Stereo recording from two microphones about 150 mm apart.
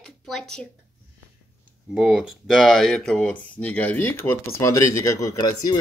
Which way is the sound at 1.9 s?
5° right (ahead or behind).